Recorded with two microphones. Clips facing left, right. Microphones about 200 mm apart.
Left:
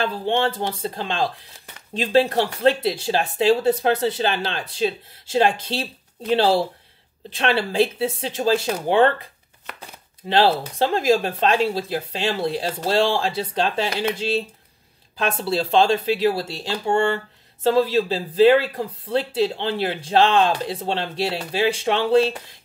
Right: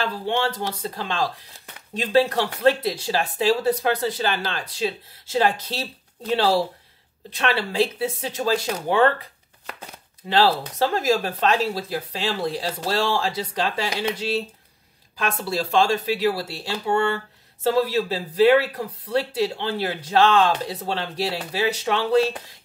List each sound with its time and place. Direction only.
0.0 s speech: 25° left (ahead or behind)
10.2 s speech: 25° left (ahead or behind)